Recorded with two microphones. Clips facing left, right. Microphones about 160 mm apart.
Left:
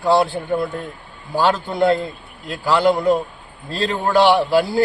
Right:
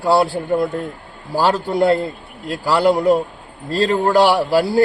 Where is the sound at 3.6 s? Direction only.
40° right (ahead or behind).